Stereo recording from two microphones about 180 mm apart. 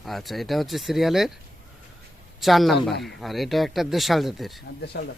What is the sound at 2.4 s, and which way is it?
Speech, centre (ahead or behind).